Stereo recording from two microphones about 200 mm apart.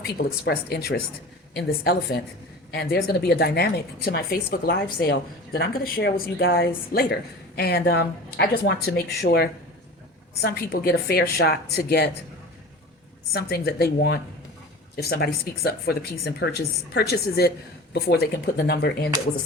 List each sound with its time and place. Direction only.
0.4 s a woman's voice: 50° left (ahead or behind)
13.3 s a woman's voice: 50° left (ahead or behind)